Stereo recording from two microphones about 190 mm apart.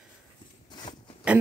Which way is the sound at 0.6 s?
20° left (ahead or behind).